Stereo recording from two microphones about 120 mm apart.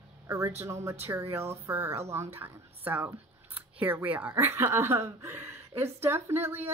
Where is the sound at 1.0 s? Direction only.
20° right (ahead or behind).